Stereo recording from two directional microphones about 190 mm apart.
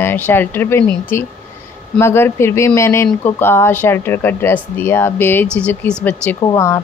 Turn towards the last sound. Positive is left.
turn(degrees=15)  # may be behind; listen again after turning